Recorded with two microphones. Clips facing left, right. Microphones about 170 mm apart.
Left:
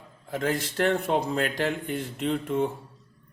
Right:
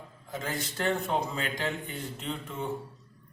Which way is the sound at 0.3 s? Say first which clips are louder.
Left 7 dB; 60° left (ahead or behind).